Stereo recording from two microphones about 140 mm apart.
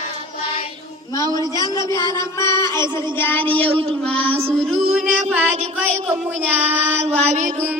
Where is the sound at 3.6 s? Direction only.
40° right (ahead or behind).